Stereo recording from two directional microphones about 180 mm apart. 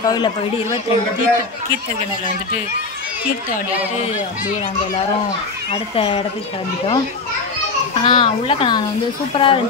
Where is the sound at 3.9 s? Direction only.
35° left (ahead or behind).